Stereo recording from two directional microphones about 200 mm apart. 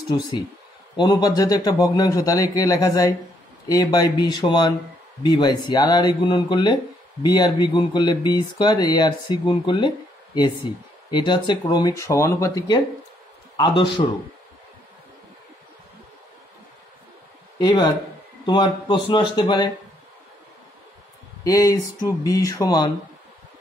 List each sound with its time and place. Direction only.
0.9 s a man's voice: 20° left (ahead or behind)
17.6 s speech: 20° left (ahead or behind)
21.5 s a man's voice: 15° left (ahead or behind)